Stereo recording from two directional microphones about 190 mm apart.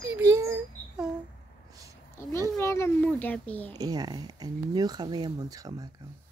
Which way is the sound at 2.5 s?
15° left (ahead or behind).